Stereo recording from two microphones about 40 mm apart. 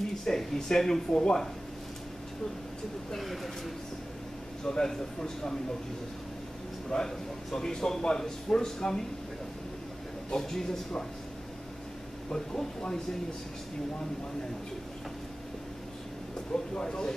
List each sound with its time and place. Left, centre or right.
0.2 s a man's voice: centre
3.2 s speech: centre
4.6 s a man's voice: centre
6.9 s a man's voice: centre
10.3 s a man's voice: centre
12.3 s a man's voice: centre
16.7 s speech: left